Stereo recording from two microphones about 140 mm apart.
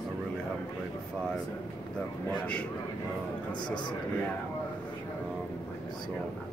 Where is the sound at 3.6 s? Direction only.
35° left (ahead or behind).